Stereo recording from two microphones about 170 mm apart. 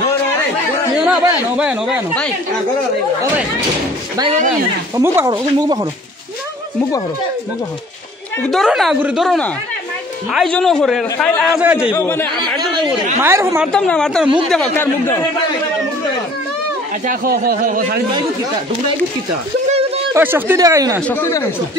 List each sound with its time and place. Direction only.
1.6 s speech: 5° right (ahead or behind)
4.9 s speech: 15° right (ahead or behind)
8.5 s a man's voice: centre (ahead or behind)
11.5 s speech: 5° right (ahead or behind)
11.9 s speech: 15° left (ahead or behind)
12.5 s a sound: 25° right (ahead or behind)
13.2 s speech: 15° right (ahead or behind)
13.7 s a man's voice: 5° left (ahead or behind)
17.0 s a man's voice: 55° right (ahead or behind)
20.2 s speech: 10° right (ahead or behind)
21.1 s speech: 15° left (ahead or behind)